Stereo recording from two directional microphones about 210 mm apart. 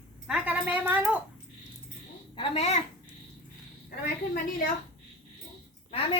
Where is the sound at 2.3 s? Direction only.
30° left (ahead or behind).